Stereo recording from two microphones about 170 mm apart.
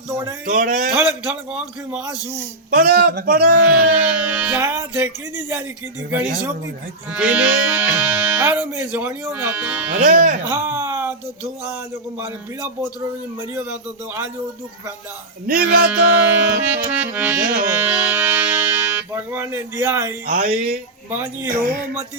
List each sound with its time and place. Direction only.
0.4 s speech: 50° right (ahead or behind)
0.9 s speech: 10° right (ahead or behind)
2.6 s speech: 60° right (ahead or behind)
3.9 s speech: 10° right (ahead or behind)
7.1 s speech: 10° right (ahead or behind)
10.0 s speech: 50° right (ahead or behind)
10.5 s a sound: 15° right (ahead or behind)
13.5 s speech: 10° right (ahead or behind)
15.5 s music: 10° right (ahead or behind)
20.2 s speech: 50° right (ahead or behind)